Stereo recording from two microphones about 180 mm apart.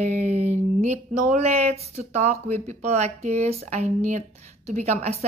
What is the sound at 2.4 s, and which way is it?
A woman's voice, 40° right (ahead or behind).